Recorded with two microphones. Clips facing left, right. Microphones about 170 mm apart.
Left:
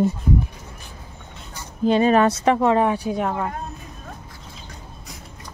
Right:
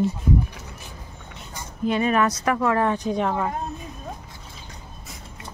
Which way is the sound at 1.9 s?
30° left (ahead or behind).